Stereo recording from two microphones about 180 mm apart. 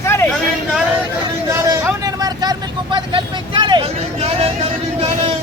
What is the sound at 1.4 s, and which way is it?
Vehicle, 15° right (ahead or behind).